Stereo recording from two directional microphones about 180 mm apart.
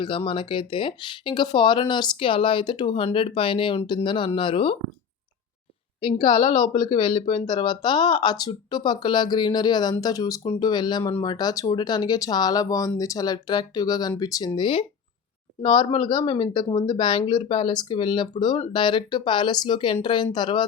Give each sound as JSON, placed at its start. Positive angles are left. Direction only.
{"t": 0.3, "sound": "speech", "side_deg": 30}
{"t": 6.0, "sound": "speech", "side_deg": 30}